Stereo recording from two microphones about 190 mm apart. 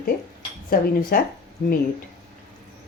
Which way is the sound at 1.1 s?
50° left (ahead or behind).